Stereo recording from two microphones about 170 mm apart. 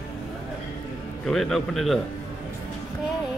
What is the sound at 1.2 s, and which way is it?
Speech, centre (ahead or behind).